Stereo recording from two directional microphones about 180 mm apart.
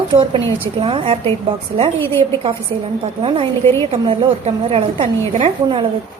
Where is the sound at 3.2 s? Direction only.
30° right (ahead or behind).